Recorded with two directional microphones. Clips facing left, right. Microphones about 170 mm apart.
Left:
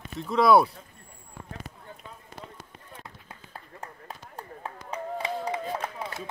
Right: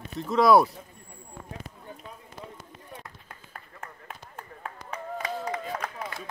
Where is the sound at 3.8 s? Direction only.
35° left (ahead or behind).